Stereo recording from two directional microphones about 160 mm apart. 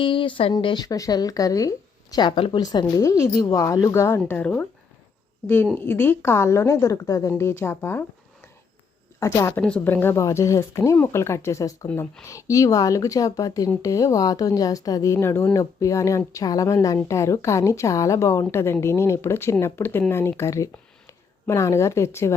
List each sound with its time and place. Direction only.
0.0 s speech: 30° left (ahead or behind); by 4.6 s 10° left (ahead or behind)
5.7 s speech: 15° left (ahead or behind)
9.2 s speech: 20° left (ahead or behind)
9.6 s speech: 5° left (ahead or behind)
11.9 s speech: 10° left (ahead or behind)
12.2 s speech: 20° left (ahead or behind)